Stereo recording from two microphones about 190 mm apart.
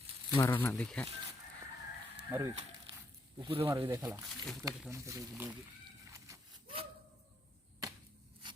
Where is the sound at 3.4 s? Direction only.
25° right (ahead or behind).